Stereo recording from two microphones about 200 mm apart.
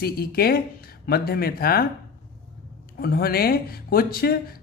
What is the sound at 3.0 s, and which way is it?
Speech, 50° left (ahead or behind).